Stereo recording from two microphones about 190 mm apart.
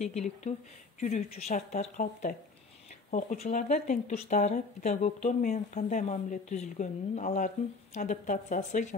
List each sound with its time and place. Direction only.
0.0 s speech: 35° left (ahead or behind)